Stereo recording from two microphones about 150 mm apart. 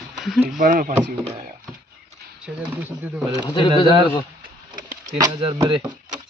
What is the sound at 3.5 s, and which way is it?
Speech, 30° left (ahead or behind).